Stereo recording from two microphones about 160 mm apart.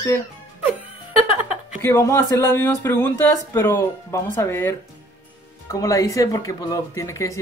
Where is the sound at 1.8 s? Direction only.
15° left (ahead or behind).